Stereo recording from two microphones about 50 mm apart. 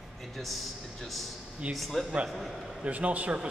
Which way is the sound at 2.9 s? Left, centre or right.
Right.